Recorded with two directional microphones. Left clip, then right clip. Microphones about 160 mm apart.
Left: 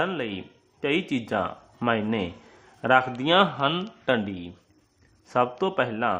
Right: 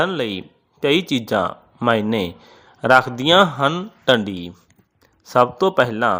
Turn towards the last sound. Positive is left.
turn(degrees=-30)  # may be behind; listen again after turning